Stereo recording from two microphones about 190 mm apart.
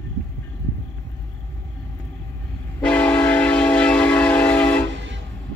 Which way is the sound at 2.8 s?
5° left (ahead or behind).